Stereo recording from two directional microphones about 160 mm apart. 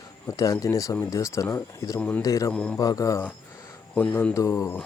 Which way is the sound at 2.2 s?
20° left (ahead or behind).